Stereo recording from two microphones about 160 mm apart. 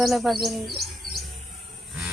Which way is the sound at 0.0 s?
Centre (ahead or behind).